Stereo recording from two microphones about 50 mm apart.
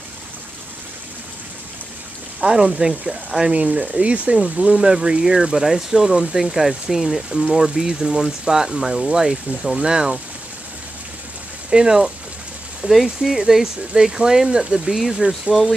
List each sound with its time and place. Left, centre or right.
2.4 s speech: centre
3.5 s speech: right
11.7 s speech: centre